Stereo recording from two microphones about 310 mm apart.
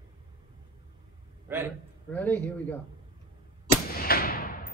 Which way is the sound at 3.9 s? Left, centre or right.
Left.